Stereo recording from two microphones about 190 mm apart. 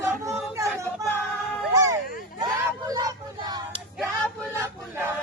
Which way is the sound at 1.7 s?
15° right (ahead or behind).